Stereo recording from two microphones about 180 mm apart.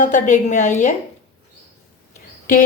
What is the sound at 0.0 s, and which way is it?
Speech, 45° left (ahead or behind).